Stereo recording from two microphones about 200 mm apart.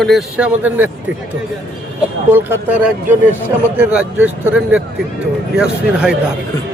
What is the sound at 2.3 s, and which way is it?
Speech, 10° right (ahead or behind).